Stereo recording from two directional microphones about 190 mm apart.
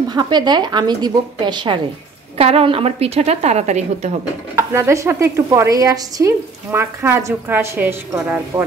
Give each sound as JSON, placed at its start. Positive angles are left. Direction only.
{"t": 0.1, "sound": "a woman's voice", "side_deg": -20}
{"t": 4.6, "sound": "speech", "side_deg": -15}